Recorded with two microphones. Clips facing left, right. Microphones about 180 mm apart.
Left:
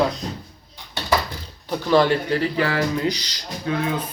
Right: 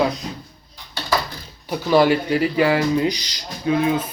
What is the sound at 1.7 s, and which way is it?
Speech, 10° right (ahead or behind).